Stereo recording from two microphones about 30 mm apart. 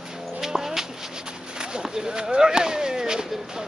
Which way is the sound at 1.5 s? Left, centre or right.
Right.